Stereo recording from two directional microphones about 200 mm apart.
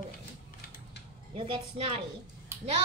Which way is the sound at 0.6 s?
45° left (ahead or behind).